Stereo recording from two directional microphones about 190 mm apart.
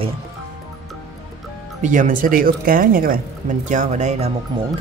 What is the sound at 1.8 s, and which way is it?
A woman's voice, 45° right (ahead or behind).